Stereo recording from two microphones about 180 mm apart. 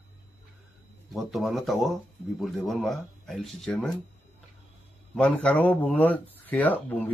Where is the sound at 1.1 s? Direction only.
Centre (ahead or behind).